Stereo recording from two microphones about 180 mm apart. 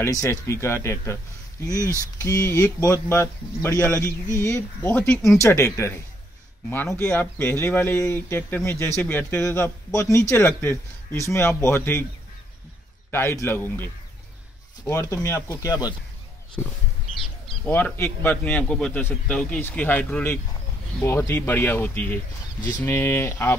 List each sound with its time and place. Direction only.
0.0 s speech: 15° left (ahead or behind)
1.8 s speech: 15° right (ahead or behind)
2.2 s speech: 20° left (ahead or behind)
13.1 s speech: 15° left (ahead or behind)
14.9 s speech: 15° left (ahead or behind)
17.2 s speech: 10° left (ahead or behind)